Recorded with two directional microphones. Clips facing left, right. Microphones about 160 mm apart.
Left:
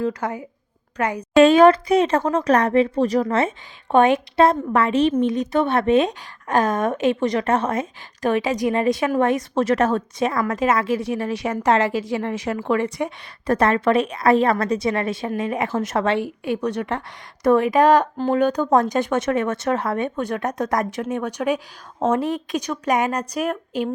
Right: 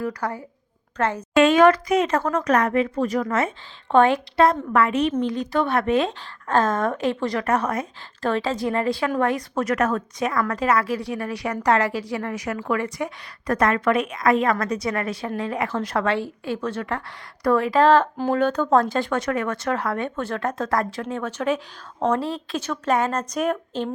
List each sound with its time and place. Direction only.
0.0 s a woman's voice: 20° left (ahead or behind)
1.4 s speech: 30° left (ahead or behind)
3.9 s a woman's voice: 20° left (ahead or behind)